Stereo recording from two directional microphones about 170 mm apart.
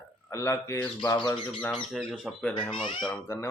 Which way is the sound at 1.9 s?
Centre (ahead or behind).